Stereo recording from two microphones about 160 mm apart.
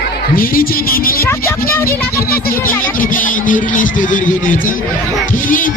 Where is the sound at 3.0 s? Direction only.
60° left (ahead or behind).